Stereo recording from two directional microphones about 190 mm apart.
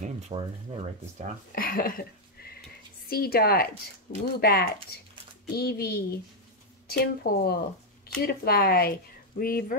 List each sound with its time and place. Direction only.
0.3 s speech: 35° right (ahead or behind)
1.5 s a woman's voice: 50° left (ahead or behind)